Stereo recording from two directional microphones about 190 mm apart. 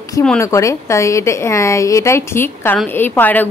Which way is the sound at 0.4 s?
15° left (ahead or behind).